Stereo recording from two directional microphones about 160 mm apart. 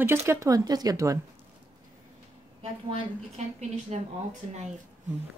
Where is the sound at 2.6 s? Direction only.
40° right (ahead or behind).